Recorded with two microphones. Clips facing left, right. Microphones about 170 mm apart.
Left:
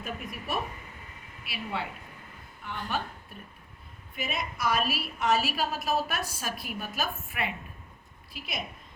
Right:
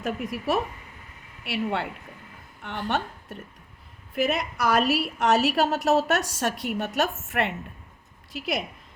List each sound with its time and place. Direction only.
0.0 s speech: 90° right
1.5 s a woman's voice: 75° right (ahead or behind)